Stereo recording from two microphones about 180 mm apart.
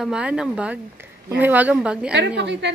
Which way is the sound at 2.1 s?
75° right (ahead or behind).